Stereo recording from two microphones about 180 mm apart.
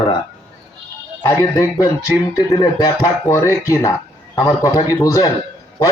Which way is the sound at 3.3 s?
15° left (ahead or behind).